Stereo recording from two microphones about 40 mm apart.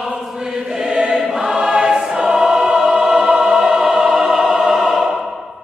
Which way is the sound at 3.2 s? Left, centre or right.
Right.